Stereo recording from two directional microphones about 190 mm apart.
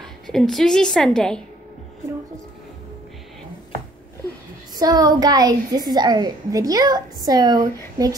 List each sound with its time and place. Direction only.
0.0 s a woman's voice: centre (ahead or behind)
4.7 s a woman's voice: 20° right (ahead or behind)